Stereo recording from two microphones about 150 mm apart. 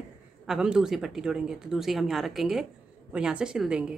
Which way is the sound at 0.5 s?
5° right (ahead or behind).